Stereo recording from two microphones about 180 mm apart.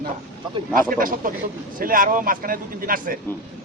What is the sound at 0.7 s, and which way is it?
A man's voice, 50° right (ahead or behind).